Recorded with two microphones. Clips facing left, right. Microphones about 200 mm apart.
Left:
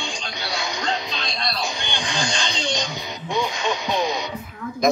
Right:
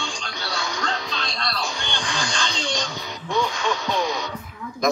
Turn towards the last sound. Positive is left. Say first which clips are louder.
# left 3 dB
turn(degrees=20)  # may be behind; listen again after turning